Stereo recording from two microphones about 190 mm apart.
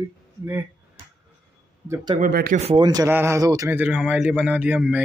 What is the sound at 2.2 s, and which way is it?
Speech, 50° right (ahead or behind).